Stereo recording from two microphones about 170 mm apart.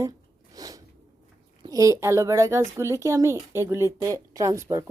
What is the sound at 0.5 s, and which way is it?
Sneeze, 20° right (ahead or behind).